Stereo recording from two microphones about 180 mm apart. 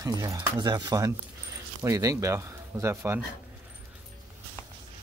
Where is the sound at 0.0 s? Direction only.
20° right (ahead or behind).